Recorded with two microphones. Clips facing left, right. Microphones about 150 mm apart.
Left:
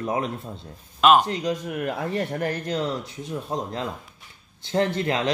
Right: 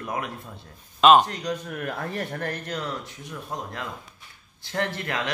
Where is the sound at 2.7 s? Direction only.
25° left (ahead or behind).